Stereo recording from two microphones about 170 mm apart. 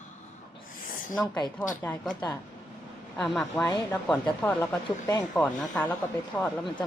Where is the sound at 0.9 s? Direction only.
55° left (ahead or behind).